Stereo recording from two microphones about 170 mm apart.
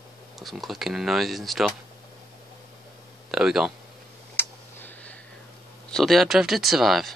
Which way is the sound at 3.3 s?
5° right (ahead or behind).